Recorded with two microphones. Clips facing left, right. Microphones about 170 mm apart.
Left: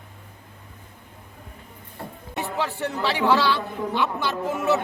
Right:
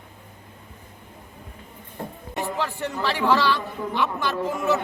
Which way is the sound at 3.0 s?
15° left (ahead or behind).